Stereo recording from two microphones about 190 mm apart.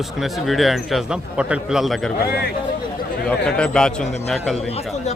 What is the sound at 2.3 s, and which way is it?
Speech, 55° left (ahead or behind).